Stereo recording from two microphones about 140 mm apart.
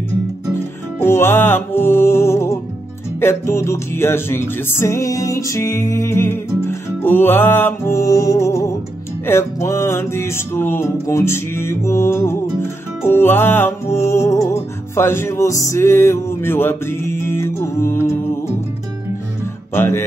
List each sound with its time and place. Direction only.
1.0 s music: 15° left (ahead or behind)
19.7 s music: 15° left (ahead or behind)